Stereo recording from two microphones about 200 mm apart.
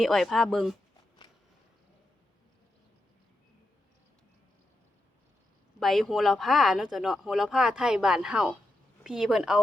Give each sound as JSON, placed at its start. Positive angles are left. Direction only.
{"t": 0.0, "sound": "speech", "side_deg": 0}
{"t": 1.2, "sound": "a sound", "side_deg": 25}
{"t": 5.8, "sound": "speech", "side_deg": 0}